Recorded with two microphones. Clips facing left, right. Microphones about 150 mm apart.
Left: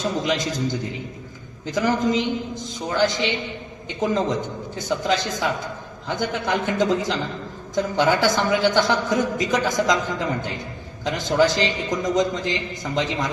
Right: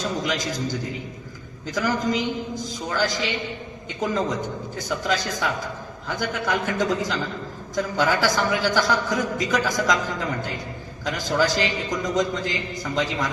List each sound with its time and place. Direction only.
0.3 s a man's voice: 25° left (ahead or behind)
11.0 s a man's voice: 20° left (ahead or behind)